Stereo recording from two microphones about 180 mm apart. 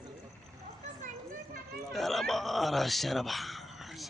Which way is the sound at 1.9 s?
Centre (ahead or behind).